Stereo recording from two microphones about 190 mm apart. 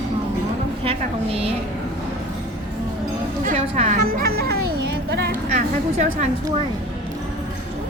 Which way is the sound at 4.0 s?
50° right (ahead or behind).